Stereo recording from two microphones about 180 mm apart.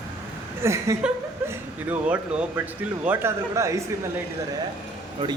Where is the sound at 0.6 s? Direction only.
15° right (ahead or behind).